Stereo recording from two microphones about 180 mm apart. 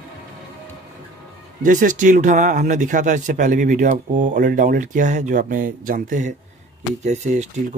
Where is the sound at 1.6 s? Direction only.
45° right (ahead or behind).